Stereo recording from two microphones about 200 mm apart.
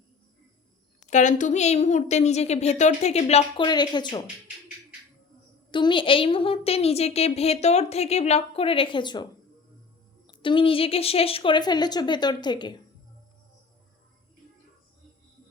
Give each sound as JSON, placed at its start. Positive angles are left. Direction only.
{"t": 1.0, "sound": "speech", "side_deg": 35}
{"t": 3.7, "sound": "a woman's voice", "side_deg": 20}
{"t": 5.7, "sound": "a woman's voice", "side_deg": 25}